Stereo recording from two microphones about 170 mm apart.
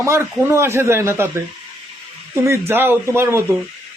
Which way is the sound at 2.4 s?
15° right (ahead or behind).